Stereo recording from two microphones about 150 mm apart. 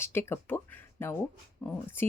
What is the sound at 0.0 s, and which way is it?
Speech, 15° left (ahead or behind).